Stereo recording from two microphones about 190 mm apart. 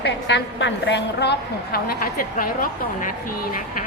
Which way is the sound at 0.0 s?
65° left (ahead or behind).